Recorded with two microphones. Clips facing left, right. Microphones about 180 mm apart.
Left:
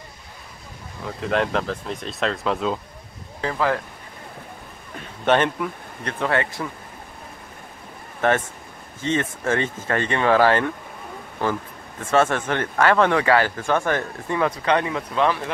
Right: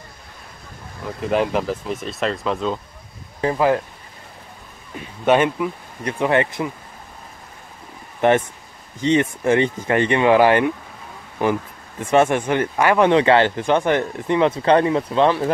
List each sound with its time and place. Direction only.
1.3 s speech: 5° right (ahead or behind)
3.3 s speech: 20° right (ahead or behind)
4.9 s speech: 10° right (ahead or behind)
8.2 s speech: 15° right (ahead or behind)